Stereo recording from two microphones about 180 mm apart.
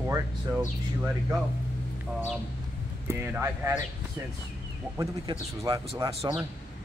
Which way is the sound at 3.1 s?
15° right (ahead or behind).